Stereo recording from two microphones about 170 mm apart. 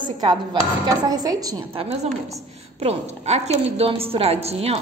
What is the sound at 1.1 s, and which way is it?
Speech, 20° right (ahead or behind).